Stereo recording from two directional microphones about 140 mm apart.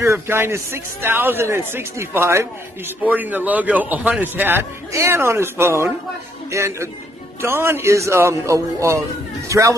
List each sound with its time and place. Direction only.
0.0 s a man's voice: 20° right (ahead or behind)